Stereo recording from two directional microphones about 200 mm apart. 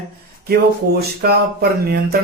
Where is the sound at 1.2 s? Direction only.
50° right (ahead or behind).